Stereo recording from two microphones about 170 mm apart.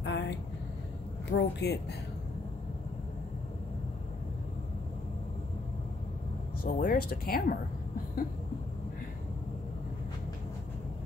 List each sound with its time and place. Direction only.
0.0 s vehicle: 90° left
1.3 s speech: 80° left
6.6 s speech: 60° left (ahead or behind)